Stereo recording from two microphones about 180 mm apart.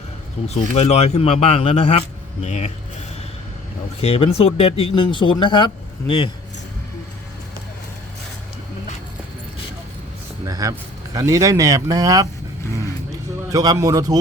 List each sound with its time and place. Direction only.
0.4 s a man's voice: 35° left (ahead or behind)
4.0 s a man's voice: 35° left (ahead or behind)
10.4 s speech: 20° right (ahead or behind)
13.5 s speech: 20° right (ahead or behind)